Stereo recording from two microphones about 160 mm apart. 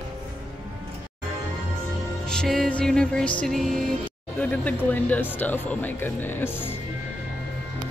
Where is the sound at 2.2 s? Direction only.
5° left (ahead or behind).